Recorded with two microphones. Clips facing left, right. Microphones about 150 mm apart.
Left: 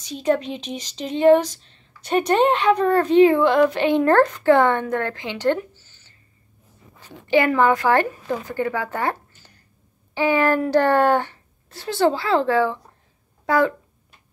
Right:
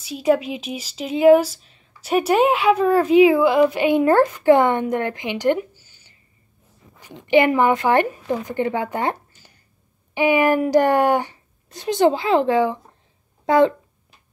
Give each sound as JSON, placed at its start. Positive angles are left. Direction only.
{"t": 0.0, "sound": "a child's voice", "side_deg": -5}